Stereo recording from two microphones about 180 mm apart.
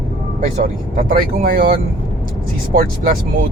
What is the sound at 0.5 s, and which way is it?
Speech, 45° right (ahead or behind).